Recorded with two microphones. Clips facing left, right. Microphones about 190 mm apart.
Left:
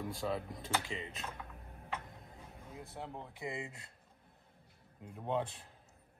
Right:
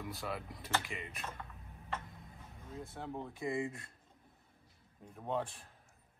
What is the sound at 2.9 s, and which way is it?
Speech, 15° left (ahead or behind).